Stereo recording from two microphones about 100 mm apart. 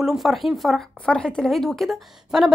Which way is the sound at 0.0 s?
5° right (ahead or behind).